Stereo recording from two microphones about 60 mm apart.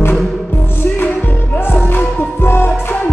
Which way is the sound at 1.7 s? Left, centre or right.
Left.